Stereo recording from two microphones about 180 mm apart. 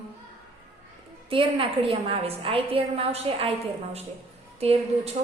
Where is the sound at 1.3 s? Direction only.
30° right (ahead or behind).